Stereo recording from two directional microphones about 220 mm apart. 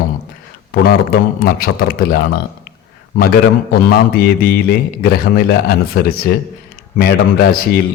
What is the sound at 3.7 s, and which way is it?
A man's voice, 45° left (ahead or behind).